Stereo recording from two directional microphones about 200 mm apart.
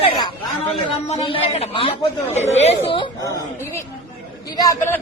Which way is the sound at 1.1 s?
30° left (ahead or behind).